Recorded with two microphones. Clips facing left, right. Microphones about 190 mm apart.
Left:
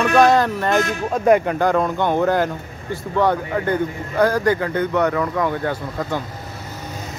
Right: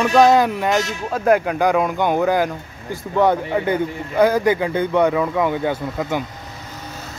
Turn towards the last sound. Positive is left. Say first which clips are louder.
# right 2 dB
turn(degrees=-10)  # may be behind; listen again after turning